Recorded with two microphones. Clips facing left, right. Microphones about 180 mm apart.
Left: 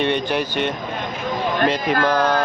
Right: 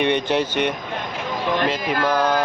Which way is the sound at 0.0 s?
20° right (ahead or behind).